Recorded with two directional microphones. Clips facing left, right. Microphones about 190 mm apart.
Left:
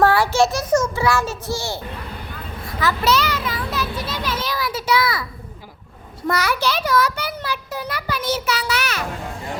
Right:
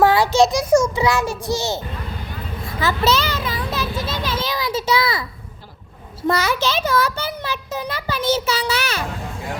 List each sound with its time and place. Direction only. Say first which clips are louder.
0.0 s a child's voice: right 2 dB; 15° right (ahead or behind)
2.8 s children playing: even; 25° right (ahead or behind)
4.3 s a sound: right 1 dB; 25° right (ahead or behind)
6.2 s a child's voice: right 1 dB; 25° right (ahead or behind)